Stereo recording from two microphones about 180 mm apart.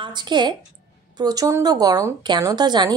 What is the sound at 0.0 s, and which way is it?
A woman's voice, 25° right (ahead or behind).